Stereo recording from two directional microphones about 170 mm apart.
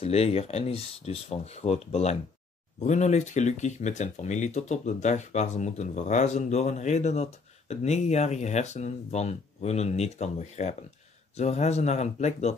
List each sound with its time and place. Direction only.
0.0 s speech: 35° left (ahead or behind)